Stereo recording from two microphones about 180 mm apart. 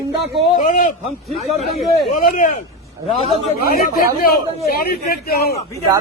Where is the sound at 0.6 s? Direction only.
45° left (ahead or behind).